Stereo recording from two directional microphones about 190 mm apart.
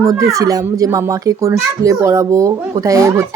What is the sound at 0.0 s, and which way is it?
A child's voice, 15° right (ahead or behind).